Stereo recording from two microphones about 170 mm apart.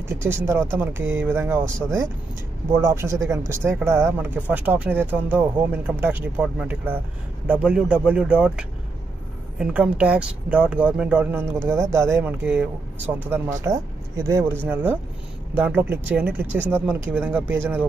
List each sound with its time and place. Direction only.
0.1 s speech: 15° right (ahead or behind)